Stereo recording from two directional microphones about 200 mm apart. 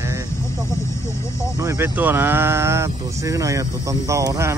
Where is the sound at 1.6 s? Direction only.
15° right (ahead or behind).